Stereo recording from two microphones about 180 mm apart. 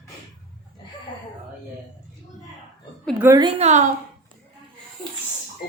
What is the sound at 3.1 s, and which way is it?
Speech, 15° right (ahead or behind).